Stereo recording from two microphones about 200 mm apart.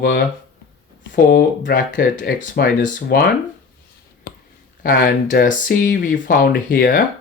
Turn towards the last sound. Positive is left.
turn(degrees=45)  # may be behind; listen again after turning